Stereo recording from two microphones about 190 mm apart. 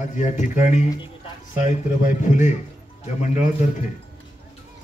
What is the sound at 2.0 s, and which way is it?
Speech, 40° left (ahead or behind).